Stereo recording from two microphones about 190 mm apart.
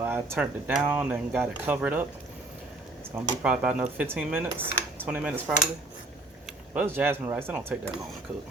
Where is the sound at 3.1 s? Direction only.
5° right (ahead or behind).